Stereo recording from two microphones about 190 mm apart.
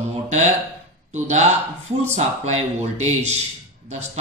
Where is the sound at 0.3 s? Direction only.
35° right (ahead or behind).